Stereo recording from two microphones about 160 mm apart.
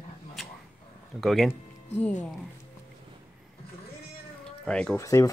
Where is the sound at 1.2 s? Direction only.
Centre (ahead or behind).